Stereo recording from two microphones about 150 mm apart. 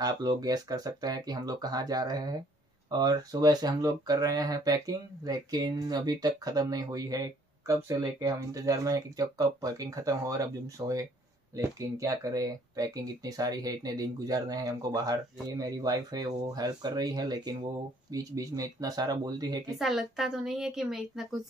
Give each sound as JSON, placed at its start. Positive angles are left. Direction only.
{"t": 0.0, "sound": "speech", "side_deg": -25}
{"t": 19.8, "sound": "a woman's voice", "side_deg": 0}